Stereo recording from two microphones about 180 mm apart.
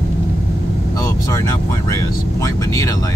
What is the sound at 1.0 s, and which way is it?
Speech, 20° left (ahead or behind).